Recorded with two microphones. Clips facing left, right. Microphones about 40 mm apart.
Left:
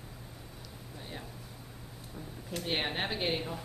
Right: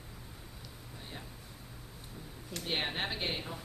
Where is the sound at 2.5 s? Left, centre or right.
Centre.